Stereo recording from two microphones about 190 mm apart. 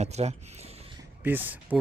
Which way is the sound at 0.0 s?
35° right (ahead or behind).